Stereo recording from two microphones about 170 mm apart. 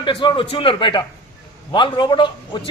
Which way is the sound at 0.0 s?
30° left (ahead or behind).